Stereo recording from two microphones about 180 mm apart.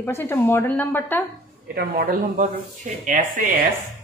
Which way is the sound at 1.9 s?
50° right (ahead or behind).